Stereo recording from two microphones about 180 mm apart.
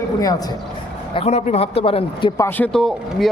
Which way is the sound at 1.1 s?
35° left (ahead or behind).